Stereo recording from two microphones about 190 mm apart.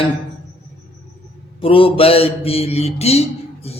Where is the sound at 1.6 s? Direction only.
30° left (ahead or behind).